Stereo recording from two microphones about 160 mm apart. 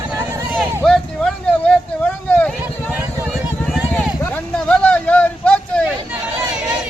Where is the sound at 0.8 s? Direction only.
5° left (ahead or behind).